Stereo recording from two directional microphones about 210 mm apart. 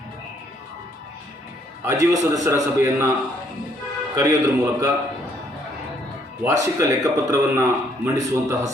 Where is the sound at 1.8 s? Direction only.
15° right (ahead or behind).